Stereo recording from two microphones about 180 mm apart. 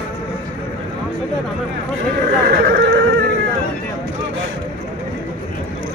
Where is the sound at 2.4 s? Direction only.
55° right (ahead or behind).